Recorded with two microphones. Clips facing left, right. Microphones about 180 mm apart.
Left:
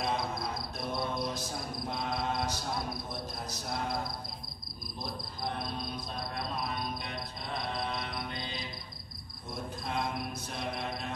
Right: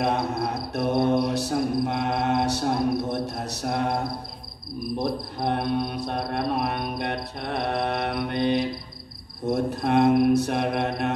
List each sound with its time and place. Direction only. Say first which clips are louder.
0.0 s music: right 9 dB; 70° right (ahead or behind)
4.9 s speech: right 13 dB; 65° right (ahead or behind)